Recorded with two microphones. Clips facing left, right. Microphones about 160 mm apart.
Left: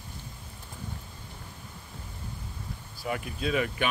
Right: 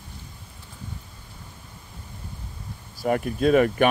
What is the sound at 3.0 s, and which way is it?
Speech, 45° right (ahead or behind).